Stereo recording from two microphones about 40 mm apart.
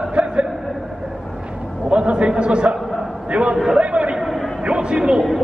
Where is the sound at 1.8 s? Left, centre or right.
Right.